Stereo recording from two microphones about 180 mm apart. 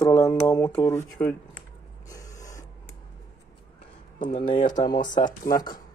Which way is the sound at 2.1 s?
20° left (ahead or behind).